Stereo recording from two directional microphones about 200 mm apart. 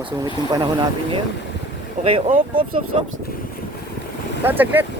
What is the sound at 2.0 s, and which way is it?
Speech, 30° right (ahead or behind).